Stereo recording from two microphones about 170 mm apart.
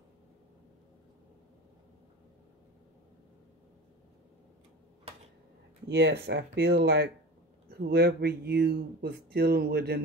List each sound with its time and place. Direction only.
5.9 s speech: 90° right
7.7 s speech: 65° right (ahead or behind)